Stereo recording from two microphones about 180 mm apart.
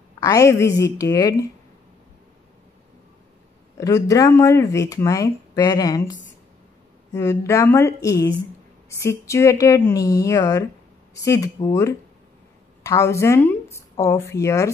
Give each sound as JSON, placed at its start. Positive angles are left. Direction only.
{"t": 0.2, "sound": "speech", "side_deg": 15}
{"t": 3.7, "sound": "speech", "side_deg": 15}
{"t": 7.2, "sound": "speech", "side_deg": 15}